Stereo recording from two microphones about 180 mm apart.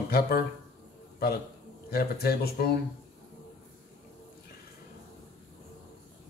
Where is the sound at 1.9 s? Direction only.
60° left (ahead or behind).